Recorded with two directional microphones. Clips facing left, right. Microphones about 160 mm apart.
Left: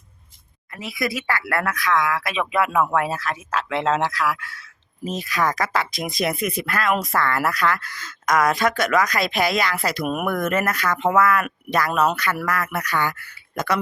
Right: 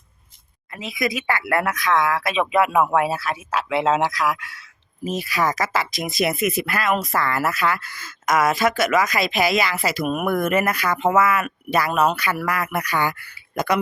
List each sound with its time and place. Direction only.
0.7 s speech: 20° right (ahead or behind)
5.0 s a woman's voice: 10° right (ahead or behind)